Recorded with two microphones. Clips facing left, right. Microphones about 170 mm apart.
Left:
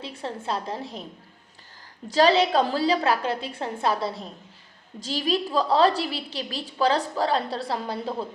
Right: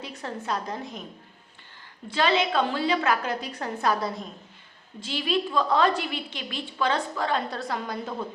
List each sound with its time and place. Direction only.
0.0 s a woman's voice: 30° left (ahead or behind)
2.0 s a woman's voice: 35° left (ahead or behind)